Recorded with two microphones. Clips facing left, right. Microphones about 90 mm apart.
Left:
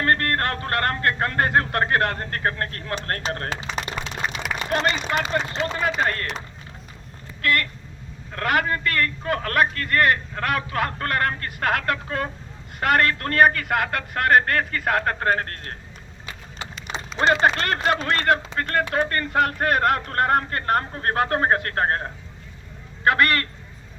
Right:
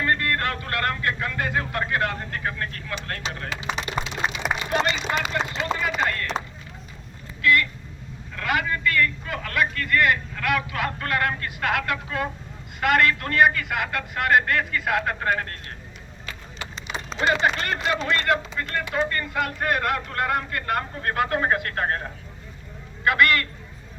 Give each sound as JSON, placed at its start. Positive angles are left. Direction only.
{"t": 0.0, "sound": "a sound", "side_deg": 55}
{"t": 5.2, "sound": "speech", "side_deg": 35}
{"t": 7.4, "sound": "speech", "side_deg": 50}
{"t": 17.5, "sound": "speech", "side_deg": 55}